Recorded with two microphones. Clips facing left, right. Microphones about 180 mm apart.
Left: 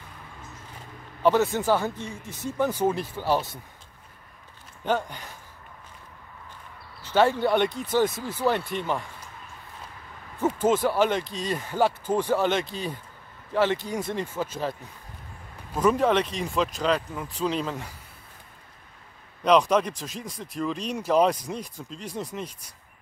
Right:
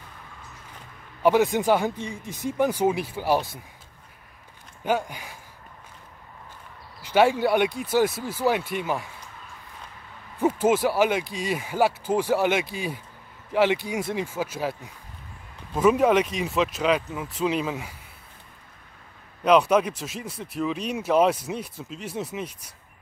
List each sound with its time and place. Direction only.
1.2 s speech: 15° right (ahead or behind)
4.8 s speech: 10° right (ahead or behind)
7.0 s speech: 15° right (ahead or behind)
10.4 s speech: 10° right (ahead or behind)
19.4 s speech: 5° right (ahead or behind)